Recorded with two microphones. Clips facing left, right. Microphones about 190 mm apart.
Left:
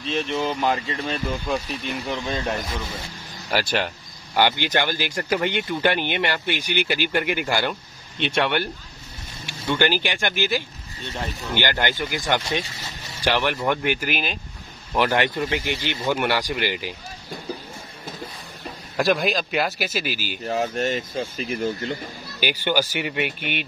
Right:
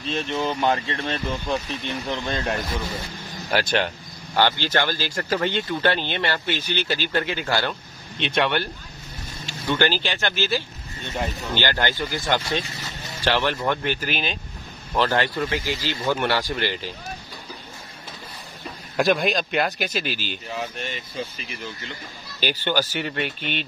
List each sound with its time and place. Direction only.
0.0 s speech: centre (ahead or behind)
18.9 s speech: centre (ahead or behind)
20.4 s speech: 45° left (ahead or behind)
22.4 s speech: 10° left (ahead or behind)